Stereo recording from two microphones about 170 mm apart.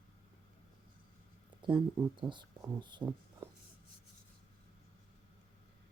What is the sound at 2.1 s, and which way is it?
Speech, 25° right (ahead or behind).